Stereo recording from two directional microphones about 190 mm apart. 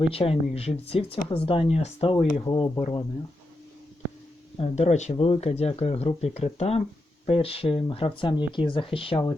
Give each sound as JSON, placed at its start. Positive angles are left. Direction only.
{"t": 0.1, "sound": "speech", "side_deg": 30}
{"t": 4.5, "sound": "speech", "side_deg": 35}